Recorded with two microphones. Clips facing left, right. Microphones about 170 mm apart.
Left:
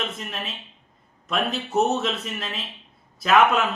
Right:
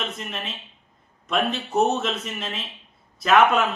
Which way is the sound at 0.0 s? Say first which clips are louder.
Even; centre (ahead or behind).